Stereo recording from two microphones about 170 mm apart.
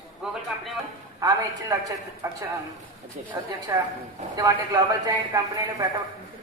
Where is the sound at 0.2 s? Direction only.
Centre (ahead or behind).